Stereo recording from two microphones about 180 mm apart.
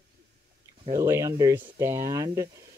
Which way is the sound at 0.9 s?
15° right (ahead or behind).